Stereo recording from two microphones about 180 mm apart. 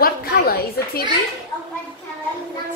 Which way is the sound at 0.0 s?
55° left (ahead or behind).